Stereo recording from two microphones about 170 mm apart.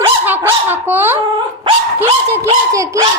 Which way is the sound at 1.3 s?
30° right (ahead or behind).